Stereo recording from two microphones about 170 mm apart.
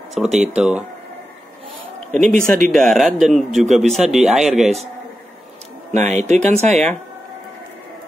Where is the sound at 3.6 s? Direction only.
45° right (ahead or behind).